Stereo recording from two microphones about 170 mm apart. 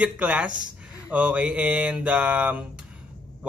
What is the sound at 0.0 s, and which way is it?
A man's voice, 10° right (ahead or behind).